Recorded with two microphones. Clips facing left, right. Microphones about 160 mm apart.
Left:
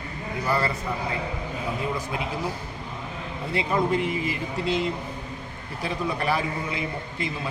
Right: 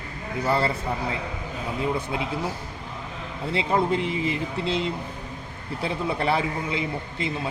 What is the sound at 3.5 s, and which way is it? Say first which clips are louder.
A man's voice: right 1 dB; 25° right (ahead or behind).